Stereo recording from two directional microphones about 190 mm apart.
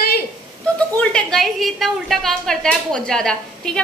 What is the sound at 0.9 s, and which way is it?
A woman's voice, 5° left (ahead or behind).